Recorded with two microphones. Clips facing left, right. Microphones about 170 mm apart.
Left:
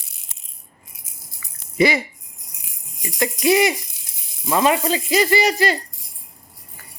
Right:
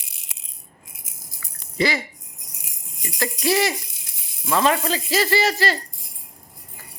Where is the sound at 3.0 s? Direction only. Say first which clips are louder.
Left 4 dB; 20° left (ahead or behind).